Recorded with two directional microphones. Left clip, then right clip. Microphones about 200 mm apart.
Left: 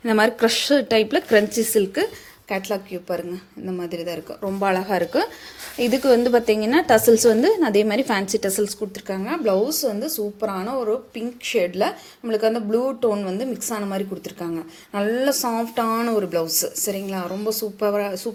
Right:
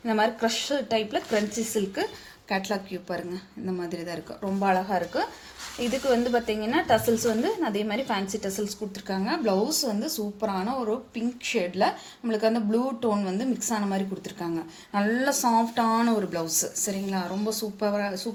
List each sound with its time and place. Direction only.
0.0 s a woman's voice: 35° left (ahead or behind)
2.5 s a woman's voice: 20° left (ahead or behind)
4.6 s a woman's voice: 35° left (ahead or behind)
9.0 s a woman's voice: 20° left (ahead or behind)